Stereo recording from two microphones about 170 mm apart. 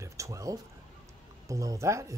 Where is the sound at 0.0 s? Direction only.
20° right (ahead or behind).